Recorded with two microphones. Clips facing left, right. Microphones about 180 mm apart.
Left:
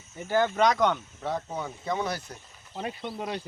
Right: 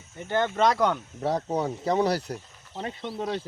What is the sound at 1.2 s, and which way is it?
Speech, 35° right (ahead or behind).